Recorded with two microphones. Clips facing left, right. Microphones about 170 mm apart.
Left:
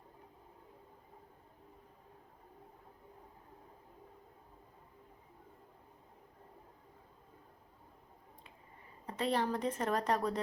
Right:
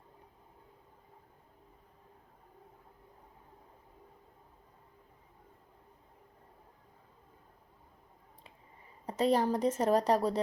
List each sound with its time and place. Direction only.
9.0 s a woman's voice: 40° right (ahead or behind)